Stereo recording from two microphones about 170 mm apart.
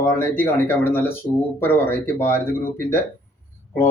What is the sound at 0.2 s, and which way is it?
Speech, 10° left (ahead or behind).